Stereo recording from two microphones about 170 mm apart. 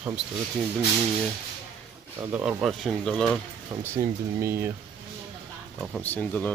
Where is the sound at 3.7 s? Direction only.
15° right (ahead or behind).